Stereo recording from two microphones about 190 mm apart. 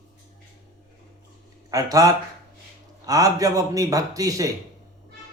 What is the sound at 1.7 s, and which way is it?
A man's voice, 20° right (ahead or behind).